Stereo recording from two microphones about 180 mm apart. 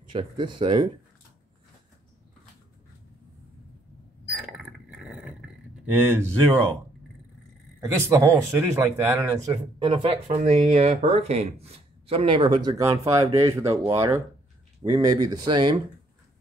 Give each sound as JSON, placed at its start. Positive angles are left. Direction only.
{"t": 0.1, "sound": "speech", "side_deg": -30}
{"t": 4.4, "sound": "a sound", "side_deg": -5}
{"t": 5.9, "sound": "speech", "side_deg": -10}
{"t": 7.8, "sound": "speech", "side_deg": -15}
{"t": 9.5, "sound": "speech", "side_deg": -30}